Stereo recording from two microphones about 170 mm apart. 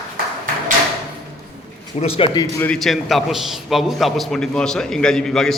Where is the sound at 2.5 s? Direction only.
10° left (ahead or behind).